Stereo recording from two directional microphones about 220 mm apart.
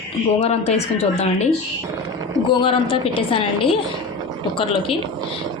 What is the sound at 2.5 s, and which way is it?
A woman's voice, 20° left (ahead or behind).